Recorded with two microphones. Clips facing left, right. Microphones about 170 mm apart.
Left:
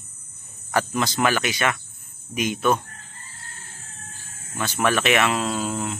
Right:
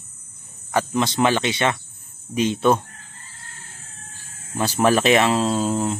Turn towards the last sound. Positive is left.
turn(degrees=-35)  # may be behind; listen again after turning